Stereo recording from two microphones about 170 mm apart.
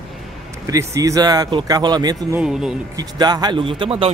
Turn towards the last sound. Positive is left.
turn(degrees=-30)  # may be behind; listen again after turning